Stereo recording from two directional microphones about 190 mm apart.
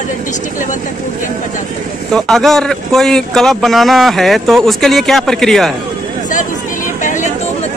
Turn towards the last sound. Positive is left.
turn(degrees=40)  # may be behind; listen again after turning